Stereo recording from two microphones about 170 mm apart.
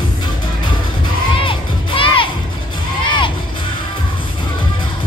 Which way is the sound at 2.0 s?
30° left (ahead or behind).